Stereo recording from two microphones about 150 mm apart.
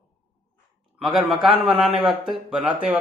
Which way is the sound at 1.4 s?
Centre (ahead or behind).